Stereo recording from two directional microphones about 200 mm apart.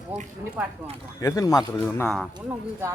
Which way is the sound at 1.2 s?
15° left (ahead or behind).